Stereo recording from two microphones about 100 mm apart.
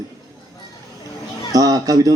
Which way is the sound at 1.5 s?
35° right (ahead or behind).